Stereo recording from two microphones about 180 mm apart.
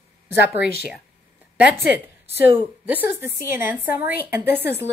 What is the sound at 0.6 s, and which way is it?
Speech, 60° left (ahead or behind).